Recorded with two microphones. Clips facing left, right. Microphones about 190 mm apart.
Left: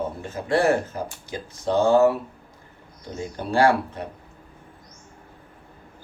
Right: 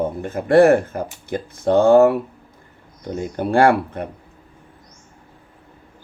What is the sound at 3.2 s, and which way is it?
Speech, 55° right (ahead or behind).